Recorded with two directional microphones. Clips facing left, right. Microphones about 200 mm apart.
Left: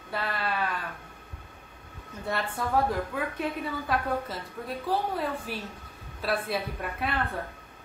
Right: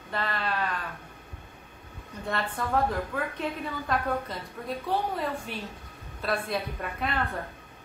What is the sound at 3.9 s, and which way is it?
A woman's voice, 5° left (ahead or behind).